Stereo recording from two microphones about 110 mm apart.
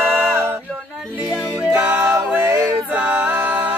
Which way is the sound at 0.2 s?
20° right (ahead or behind).